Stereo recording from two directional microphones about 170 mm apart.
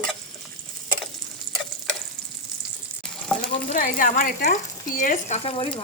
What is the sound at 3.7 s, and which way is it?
Speech, 50° left (ahead or behind).